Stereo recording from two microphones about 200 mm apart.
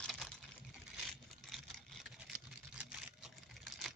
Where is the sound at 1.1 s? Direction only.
Centre (ahead or behind).